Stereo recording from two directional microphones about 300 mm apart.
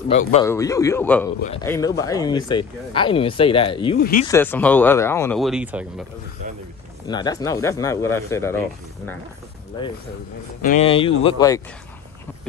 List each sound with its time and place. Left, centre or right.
0.3 s speech: centre
4.0 s speech: left
4.3 s speech: centre
7.1 s speech: centre
10.6 s speech: left